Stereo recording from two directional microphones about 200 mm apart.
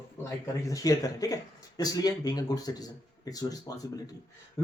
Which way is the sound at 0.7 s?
15° left (ahead or behind).